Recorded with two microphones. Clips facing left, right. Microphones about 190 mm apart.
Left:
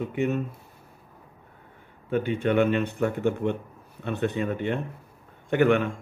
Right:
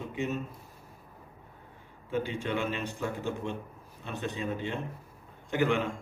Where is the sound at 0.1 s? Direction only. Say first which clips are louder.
Left 6 dB; 60° left (ahead or behind).